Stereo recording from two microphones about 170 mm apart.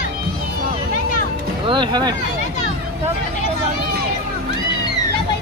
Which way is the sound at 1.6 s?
25° right (ahead or behind).